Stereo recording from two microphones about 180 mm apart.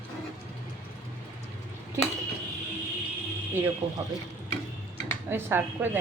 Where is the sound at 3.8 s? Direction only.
25° right (ahead or behind).